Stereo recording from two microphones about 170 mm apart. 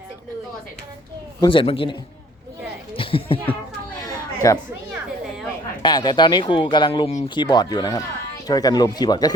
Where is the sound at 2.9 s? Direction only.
30° left (ahead or behind).